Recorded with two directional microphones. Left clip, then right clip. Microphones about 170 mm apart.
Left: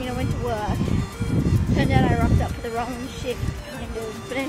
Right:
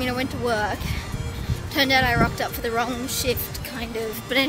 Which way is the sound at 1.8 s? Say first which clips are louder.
Right 4 dB; 20° right (ahead or behind).